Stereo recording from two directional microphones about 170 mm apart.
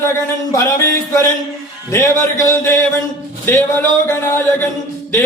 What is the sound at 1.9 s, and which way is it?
Speech, 15° left (ahead or behind).